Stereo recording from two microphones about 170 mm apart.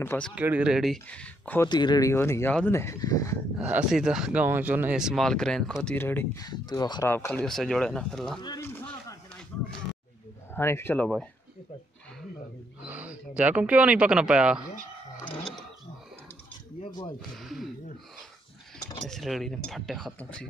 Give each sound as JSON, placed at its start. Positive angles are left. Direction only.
{"t": 0.0, "sound": "speech", "side_deg": 15}
{"t": 0.4, "sound": "speech", "side_deg": -10}
{"t": 1.7, "sound": "speech", "side_deg": 25}
{"t": 3.5, "sound": "speech", "side_deg": -10}
{"t": 6.4, "sound": "speech", "side_deg": 25}
{"t": 7.1, "sound": "speech", "side_deg": 10}
{"t": 8.4, "sound": "speech", "side_deg": 25}
{"t": 8.6, "sound": "a sound", "side_deg": 10}
{"t": 10.5, "sound": "speech", "side_deg": 15}
{"t": 12.8, "sound": "a sound", "side_deg": -10}
{"t": 13.4, "sound": "speech", "side_deg": -10}
{"t": 18.8, "sound": "keys jangling", "side_deg": 25}
{"t": 19.0, "sound": "speech", "side_deg": 0}